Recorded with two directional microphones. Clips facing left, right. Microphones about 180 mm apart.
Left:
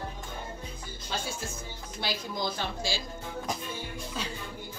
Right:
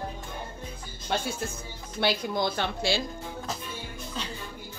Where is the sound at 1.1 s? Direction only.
65° right (ahead or behind).